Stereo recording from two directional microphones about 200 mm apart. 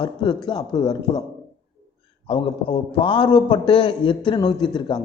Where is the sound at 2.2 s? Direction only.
25° left (ahead or behind).